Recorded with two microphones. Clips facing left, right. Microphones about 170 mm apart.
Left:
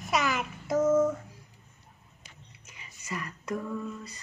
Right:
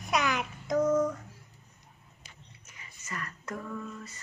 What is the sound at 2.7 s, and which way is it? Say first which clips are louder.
Whispering: left 4 dB; 15° left (ahead or behind).